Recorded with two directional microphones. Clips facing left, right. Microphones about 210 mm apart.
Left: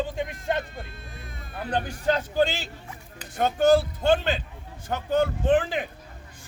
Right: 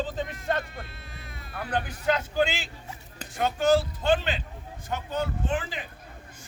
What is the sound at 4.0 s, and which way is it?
Speech, 45° left (ahead or behind).